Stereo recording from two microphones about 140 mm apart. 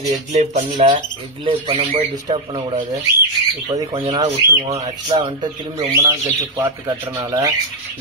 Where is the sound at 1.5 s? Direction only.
40° right (ahead or behind).